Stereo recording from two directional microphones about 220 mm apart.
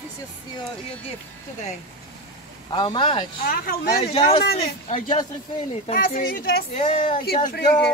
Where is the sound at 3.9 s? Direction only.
25° left (ahead or behind).